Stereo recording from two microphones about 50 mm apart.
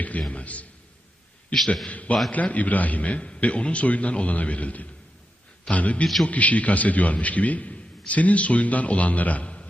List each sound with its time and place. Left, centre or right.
0.0 s a man's voice: left
1.9 s a man's voice: left